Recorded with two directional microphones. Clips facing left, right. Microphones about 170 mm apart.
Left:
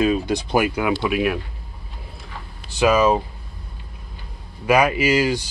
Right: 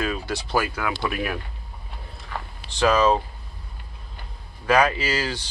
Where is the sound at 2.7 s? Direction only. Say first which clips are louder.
Left 2 dB; 10° left (ahead or behind).